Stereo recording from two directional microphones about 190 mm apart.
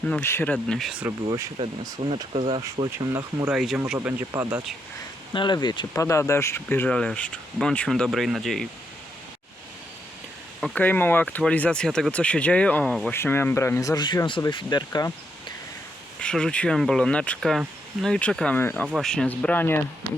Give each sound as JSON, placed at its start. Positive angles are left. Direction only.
{"t": 0.0, "sound": "speech", "side_deg": 5}
{"t": 1.3, "sound": "speech", "side_deg": -20}
{"t": 3.5, "sound": "speech", "side_deg": 0}
{"t": 5.3, "sound": "speech", "side_deg": 25}
{"t": 10.6, "sound": "speech", "side_deg": 10}
{"t": 16.2, "sound": "speech", "side_deg": 5}